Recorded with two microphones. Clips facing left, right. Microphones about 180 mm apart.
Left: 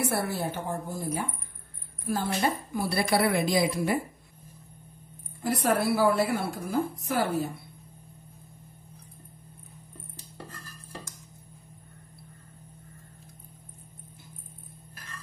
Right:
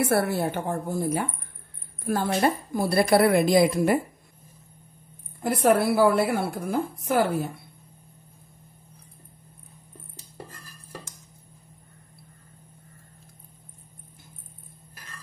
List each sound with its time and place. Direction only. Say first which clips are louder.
0.0 s a woman's voice: right 6 dB; 65° right (ahead or behind)
5.4 s a woman's voice: right 5 dB; 55° right (ahead or behind)